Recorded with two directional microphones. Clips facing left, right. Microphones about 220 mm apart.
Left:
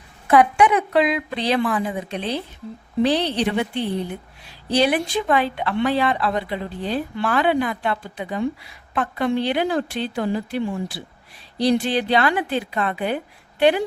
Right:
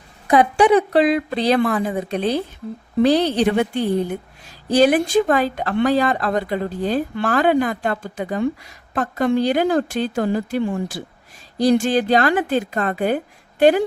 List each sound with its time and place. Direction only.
0.5 s a woman's voice: 35° right (ahead or behind)